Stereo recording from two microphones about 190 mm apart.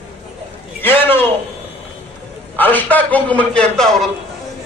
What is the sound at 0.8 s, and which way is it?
Speech, 10° left (ahead or behind).